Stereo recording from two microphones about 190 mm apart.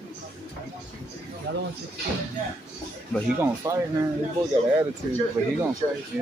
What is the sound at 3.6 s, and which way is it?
Speech, 15° right (ahead or behind).